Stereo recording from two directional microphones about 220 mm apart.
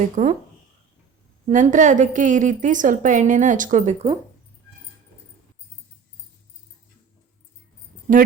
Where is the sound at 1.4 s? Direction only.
35° right (ahead or behind).